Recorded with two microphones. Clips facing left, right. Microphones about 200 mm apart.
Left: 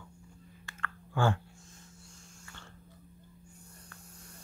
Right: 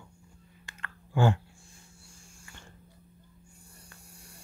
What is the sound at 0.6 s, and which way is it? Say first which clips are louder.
Clicking: left 4 dB; 20° right (ahead or behind).